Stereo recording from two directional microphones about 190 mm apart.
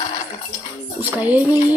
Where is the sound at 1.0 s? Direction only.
10° right (ahead or behind).